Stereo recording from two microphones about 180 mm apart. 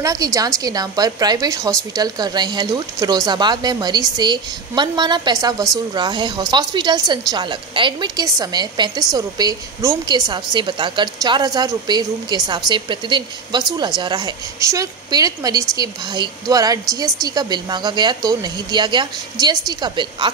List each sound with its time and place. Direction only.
0.0 s a woman's voice: 20° right (ahead or behind)